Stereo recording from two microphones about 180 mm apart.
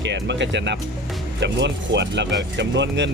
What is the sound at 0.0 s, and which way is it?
Speech, 75° right (ahead or behind).